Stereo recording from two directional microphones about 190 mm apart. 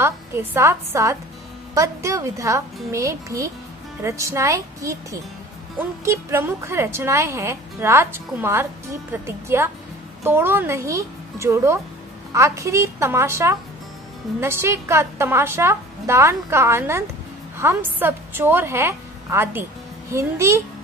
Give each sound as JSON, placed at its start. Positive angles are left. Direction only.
{"t": 0.0, "sound": "a woman's voice", "side_deg": -10}